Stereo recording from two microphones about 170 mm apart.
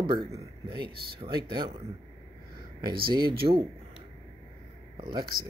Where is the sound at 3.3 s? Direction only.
30° right (ahead or behind).